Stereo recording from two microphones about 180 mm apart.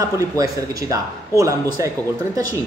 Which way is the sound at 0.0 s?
20° right (ahead or behind).